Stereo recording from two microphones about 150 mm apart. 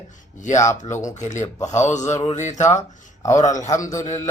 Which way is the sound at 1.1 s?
50° left (ahead or behind).